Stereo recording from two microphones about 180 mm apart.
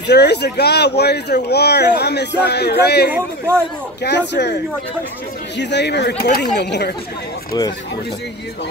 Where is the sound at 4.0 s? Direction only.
70° left (ahead or behind).